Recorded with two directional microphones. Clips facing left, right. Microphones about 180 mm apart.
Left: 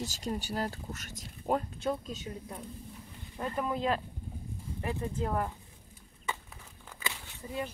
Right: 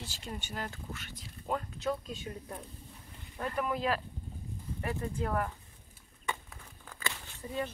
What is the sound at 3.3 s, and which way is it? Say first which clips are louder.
Speech: left 1 dB; 25° left (ahead or behind).